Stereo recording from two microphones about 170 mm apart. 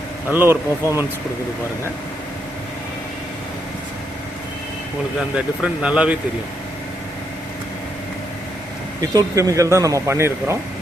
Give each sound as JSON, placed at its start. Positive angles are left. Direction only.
{"t": 0.3, "sound": "speech", "side_deg": -10}
{"t": 5.6, "sound": "speech", "side_deg": -5}
{"t": 9.0, "sound": "speech", "side_deg": -20}